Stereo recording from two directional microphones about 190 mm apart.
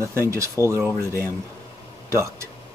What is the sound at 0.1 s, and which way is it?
Speech, 15° right (ahead or behind).